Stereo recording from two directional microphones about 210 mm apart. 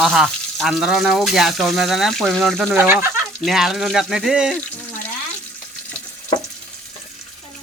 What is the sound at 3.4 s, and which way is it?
Speech, centre (ahead or behind).